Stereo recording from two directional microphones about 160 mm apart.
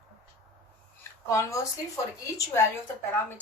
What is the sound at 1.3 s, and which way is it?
Speech, 20° left (ahead or behind).